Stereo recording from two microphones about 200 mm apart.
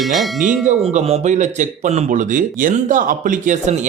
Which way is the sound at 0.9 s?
30° right (ahead or behind).